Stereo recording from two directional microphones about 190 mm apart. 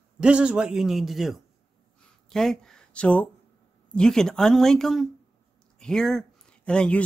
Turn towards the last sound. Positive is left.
turn(degrees=5)  # may be behind; listen again after turning